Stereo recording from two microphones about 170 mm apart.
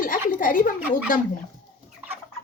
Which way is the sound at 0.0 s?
55° left (ahead or behind).